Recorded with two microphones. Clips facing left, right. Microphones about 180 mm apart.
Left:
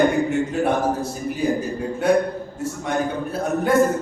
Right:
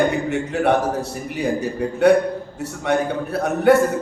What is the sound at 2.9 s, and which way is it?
Speech, 70° right (ahead or behind).